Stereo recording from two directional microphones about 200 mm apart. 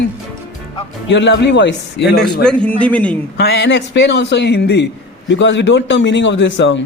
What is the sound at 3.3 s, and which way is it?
A man's voice, 55° left (ahead or behind).